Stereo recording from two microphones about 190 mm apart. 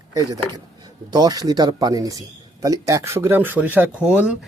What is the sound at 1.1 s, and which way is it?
Speech, 20° right (ahead or behind).